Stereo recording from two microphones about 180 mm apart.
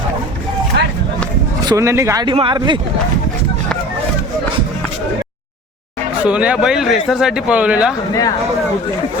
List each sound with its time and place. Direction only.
1.6 s speech: 15° right (ahead or behind)
6.2 s speech: 5° right (ahead or behind)